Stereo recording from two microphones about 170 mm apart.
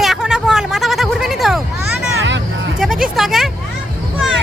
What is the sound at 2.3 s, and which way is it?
Hubbub, 90° right.